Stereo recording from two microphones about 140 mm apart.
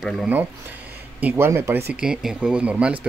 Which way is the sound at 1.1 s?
15° right (ahead or behind).